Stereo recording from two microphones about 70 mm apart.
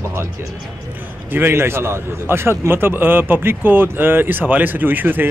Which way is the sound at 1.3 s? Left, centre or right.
Right.